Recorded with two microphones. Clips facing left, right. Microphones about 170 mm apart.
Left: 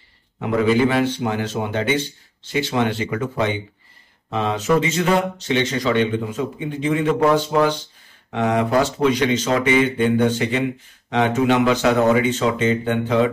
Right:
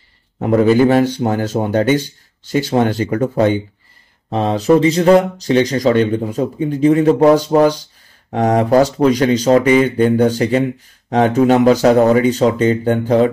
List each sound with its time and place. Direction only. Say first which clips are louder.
0.4 s speech: right 6 dB; 45° right (ahead or behind)